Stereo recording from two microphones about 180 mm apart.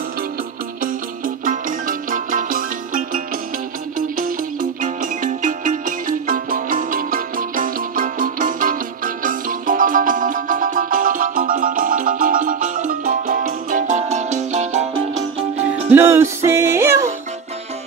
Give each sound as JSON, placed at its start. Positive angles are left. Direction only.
{"t": 1.2, "sound": "music", "side_deg": -50}
{"t": 4.2, "sound": "music", "side_deg": -45}
{"t": 15.9, "sound": "music", "side_deg": -15}